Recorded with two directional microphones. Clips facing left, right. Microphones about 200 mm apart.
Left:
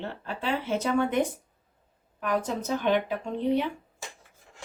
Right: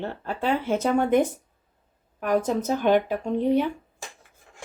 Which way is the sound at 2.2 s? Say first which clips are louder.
Right 5 dB; 45° right (ahead or behind).